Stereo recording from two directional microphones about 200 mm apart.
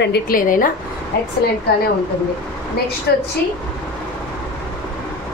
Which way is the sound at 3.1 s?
55° left (ahead or behind).